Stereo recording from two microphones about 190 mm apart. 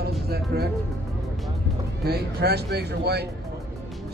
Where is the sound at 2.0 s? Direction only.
55° right (ahead or behind).